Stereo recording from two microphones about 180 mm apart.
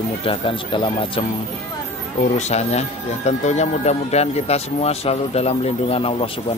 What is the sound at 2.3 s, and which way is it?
A man's voice, 40° left (ahead or behind).